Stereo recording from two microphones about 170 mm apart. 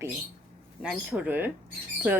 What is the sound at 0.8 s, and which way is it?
Speech, 5° right (ahead or behind).